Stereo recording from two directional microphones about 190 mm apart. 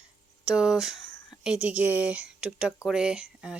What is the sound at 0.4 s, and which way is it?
Speech, 5° right (ahead or behind).